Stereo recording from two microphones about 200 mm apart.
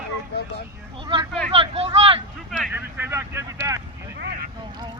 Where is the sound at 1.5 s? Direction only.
30° right (ahead or behind).